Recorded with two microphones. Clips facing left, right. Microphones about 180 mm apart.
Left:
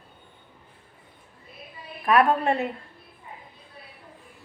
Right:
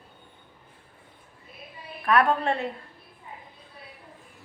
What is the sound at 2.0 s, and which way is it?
Speech, 15° left (ahead or behind).